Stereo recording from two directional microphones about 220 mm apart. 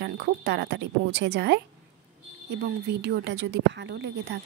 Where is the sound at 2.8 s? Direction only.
50° right (ahead or behind).